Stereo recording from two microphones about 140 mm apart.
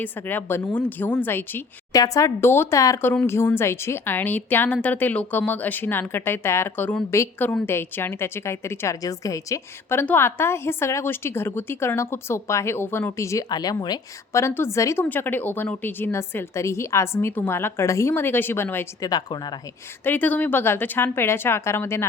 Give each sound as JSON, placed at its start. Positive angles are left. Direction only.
{"t": 0.0, "sound": "speech", "side_deg": 15}
{"t": 19.1, "sound": "speech", "side_deg": 30}
{"t": 20.1, "sound": "speech", "side_deg": 10}